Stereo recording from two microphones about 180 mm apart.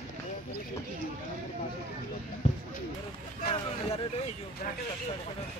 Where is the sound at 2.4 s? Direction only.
40° left (ahead or behind).